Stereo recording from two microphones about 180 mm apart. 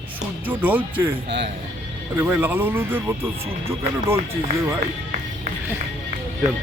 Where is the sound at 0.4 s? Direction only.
10° right (ahead or behind).